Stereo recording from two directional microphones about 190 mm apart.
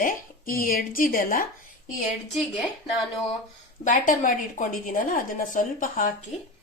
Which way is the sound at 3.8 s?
45° left (ahead or behind).